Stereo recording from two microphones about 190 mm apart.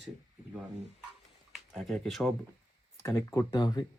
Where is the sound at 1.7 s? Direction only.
Centre (ahead or behind).